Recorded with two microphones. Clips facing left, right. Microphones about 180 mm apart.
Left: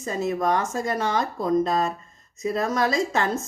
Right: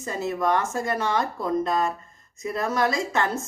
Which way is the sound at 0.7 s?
20° left (ahead or behind).